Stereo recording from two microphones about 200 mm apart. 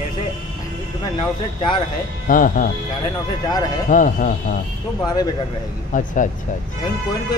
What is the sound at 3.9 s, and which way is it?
Speech, 40° left (ahead or behind).